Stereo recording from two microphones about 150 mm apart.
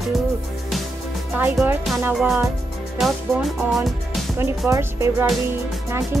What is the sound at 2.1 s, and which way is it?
Speech, centre (ahead or behind).